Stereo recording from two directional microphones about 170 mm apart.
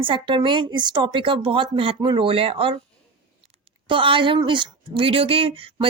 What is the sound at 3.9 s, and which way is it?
A woman's voice, 30° right (ahead or behind).